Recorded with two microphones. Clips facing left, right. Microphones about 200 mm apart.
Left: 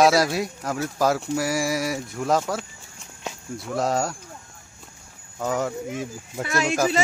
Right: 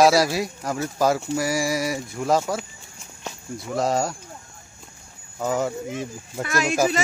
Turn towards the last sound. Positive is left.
turn(degrees=-10)  # may be behind; listen again after turning